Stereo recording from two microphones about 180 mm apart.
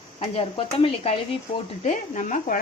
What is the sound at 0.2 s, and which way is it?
Speech, 35° left (ahead or behind).